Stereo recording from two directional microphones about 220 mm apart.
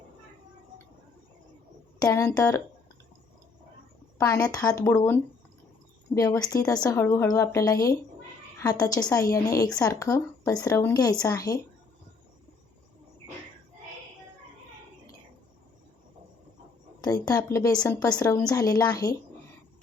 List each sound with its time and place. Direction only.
2.0 s a woman's voice: 15° left (ahead or behind)
4.5 s a woman's voice: 15° left (ahead or behind)
17.0 s a woman's voice: 15° left (ahead or behind)